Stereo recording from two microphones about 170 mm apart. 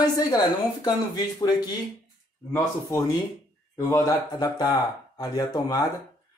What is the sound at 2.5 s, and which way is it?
Speech, 15° left (ahead or behind).